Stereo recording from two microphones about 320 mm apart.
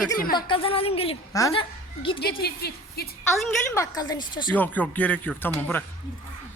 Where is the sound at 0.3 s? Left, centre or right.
Centre.